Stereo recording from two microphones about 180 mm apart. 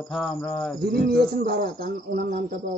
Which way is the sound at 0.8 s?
60° right (ahead or behind).